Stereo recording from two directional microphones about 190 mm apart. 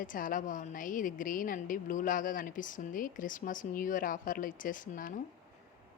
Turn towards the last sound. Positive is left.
turn(degrees=45)  # may be behind; listen again after turning